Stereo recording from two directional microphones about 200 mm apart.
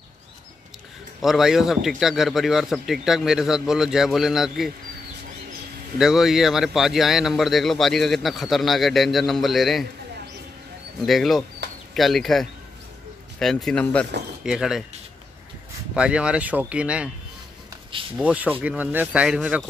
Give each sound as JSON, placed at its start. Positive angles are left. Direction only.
{"t": 1.2, "sound": "a man's voice", "side_deg": 0}
{"t": 5.9, "sound": "a man's voice", "side_deg": 0}
{"t": 11.1, "sound": "a man's voice", "side_deg": 0}
{"t": 15.9, "sound": "a man's voice", "side_deg": -5}
{"t": 18.1, "sound": "speech", "side_deg": -5}